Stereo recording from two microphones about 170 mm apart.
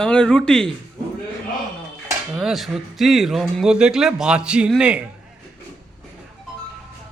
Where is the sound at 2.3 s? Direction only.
Centre (ahead or behind).